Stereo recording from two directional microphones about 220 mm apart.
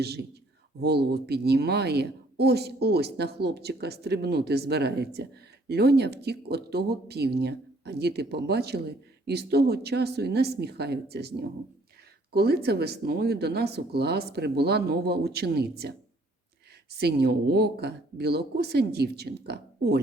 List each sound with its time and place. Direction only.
0.0 s a woman's voice: 45° right (ahead or behind)
17.0 s a woman's voice: 45° right (ahead or behind)